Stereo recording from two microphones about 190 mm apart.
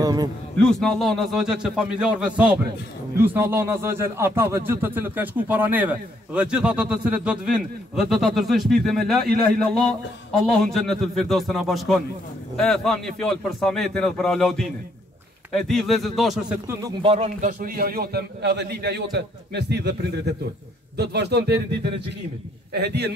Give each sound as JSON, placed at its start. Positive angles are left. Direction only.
{"t": 0.0, "sound": "a man's voice", "side_deg": -20}
{"t": 0.6, "sound": "a man's voice", "side_deg": 5}
{"t": 10.6, "sound": "a man's voice", "side_deg": 0}
{"t": 17.0, "sound": "a man's voice", "side_deg": -30}